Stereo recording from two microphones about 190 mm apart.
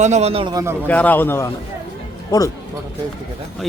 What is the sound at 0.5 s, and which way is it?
Speech, 15° right (ahead or behind).